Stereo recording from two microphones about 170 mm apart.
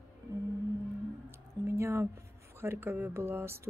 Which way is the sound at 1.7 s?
15° right (ahead or behind).